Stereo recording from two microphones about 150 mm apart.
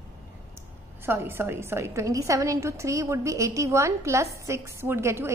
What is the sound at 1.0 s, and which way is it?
A woman's voice, 15° right (ahead or behind).